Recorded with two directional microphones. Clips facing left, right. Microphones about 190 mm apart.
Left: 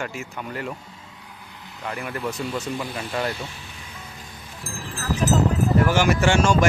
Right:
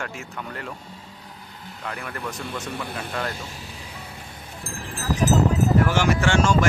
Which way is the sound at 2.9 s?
60° right (ahead or behind).